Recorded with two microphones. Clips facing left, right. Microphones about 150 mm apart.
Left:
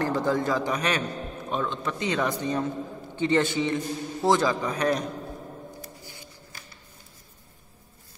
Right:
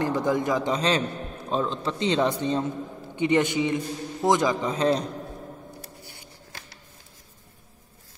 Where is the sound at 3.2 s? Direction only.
15° right (ahead or behind).